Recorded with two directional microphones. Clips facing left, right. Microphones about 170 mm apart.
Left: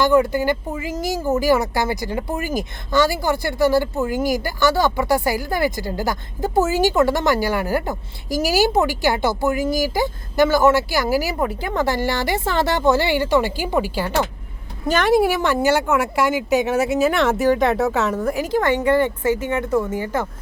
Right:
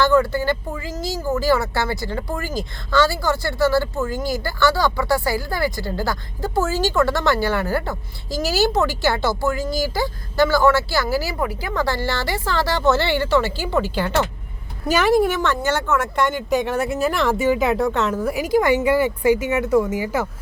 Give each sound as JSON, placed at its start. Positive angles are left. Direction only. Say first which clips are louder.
{"t": 0.0, "sound": "speech", "louder": "left 1 dB", "side_deg": 15}
{"t": 14.8, "sound": "speech", "louder": "even", "side_deg": -5}